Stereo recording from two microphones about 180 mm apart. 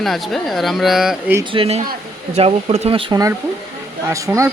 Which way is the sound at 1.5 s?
30° right (ahead or behind).